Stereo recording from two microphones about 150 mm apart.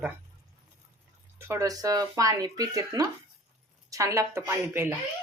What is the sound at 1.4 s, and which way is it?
Speech, 20° right (ahead or behind).